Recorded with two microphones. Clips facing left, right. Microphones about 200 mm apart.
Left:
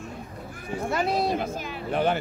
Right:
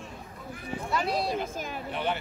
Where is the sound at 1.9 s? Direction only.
45° left (ahead or behind).